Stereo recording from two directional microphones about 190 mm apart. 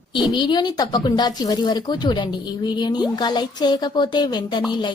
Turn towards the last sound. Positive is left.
turn(degrees=25)  # may be behind; listen again after turning